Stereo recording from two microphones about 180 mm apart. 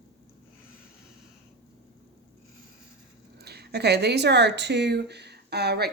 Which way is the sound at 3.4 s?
65° right (ahead or behind).